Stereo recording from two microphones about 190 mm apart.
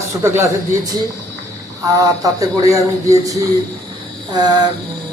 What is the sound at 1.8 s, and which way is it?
Speech, 15° right (ahead or behind).